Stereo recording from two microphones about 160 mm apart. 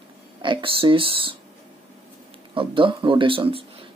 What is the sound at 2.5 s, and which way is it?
Speech, 35° right (ahead or behind).